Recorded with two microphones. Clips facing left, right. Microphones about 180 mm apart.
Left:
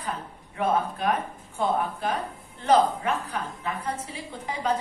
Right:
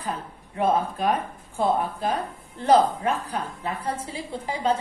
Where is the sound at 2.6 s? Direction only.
35° right (ahead or behind).